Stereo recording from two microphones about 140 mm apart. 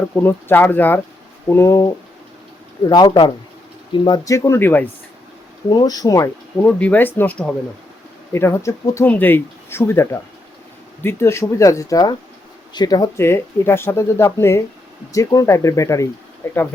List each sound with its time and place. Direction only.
0.2 s speech: 15° left (ahead or behind)
5.7 s speech: 30° left (ahead or behind)
6.7 s speech: 10° left (ahead or behind)